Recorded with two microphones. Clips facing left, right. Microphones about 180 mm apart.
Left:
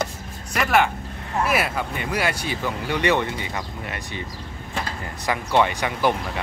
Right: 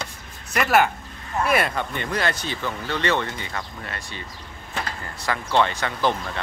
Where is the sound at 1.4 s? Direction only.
5° left (ahead or behind).